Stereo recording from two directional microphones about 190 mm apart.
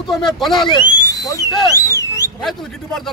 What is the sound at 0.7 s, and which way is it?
Speech, 25° left (ahead or behind).